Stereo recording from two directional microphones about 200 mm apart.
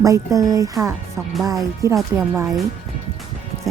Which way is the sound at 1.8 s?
15° right (ahead or behind).